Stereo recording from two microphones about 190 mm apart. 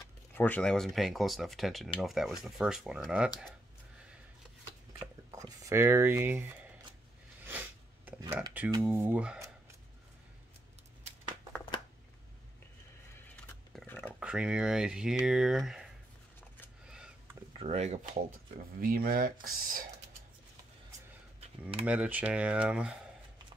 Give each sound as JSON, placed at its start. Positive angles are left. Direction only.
{"t": 0.3, "sound": "speech", "side_deg": 10}
{"t": 5.0, "sound": "speech", "side_deg": -15}
{"t": 7.4, "sound": "a sound", "side_deg": -10}
{"t": 8.8, "sound": "speech", "side_deg": -10}
{"t": 13.7, "sound": "a sound", "side_deg": 5}
{"t": 14.2, "sound": "speech", "side_deg": -5}
{"t": 16.8, "sound": "a sound", "side_deg": -5}
{"t": 17.6, "sound": "speech", "side_deg": -35}
{"t": 18.8, "sound": "speech", "side_deg": -50}
{"t": 21.4, "sound": "typing", "side_deg": -30}
{"t": 21.8, "sound": "speech", "side_deg": -5}